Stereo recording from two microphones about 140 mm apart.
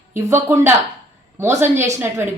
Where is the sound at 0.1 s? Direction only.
20° right (ahead or behind).